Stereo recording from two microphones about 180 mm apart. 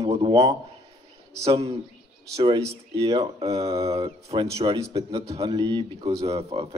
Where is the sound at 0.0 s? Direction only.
25° right (ahead or behind).